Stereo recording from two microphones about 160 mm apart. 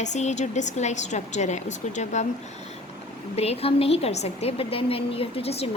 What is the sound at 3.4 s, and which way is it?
A woman's voice, 40° left (ahead or behind).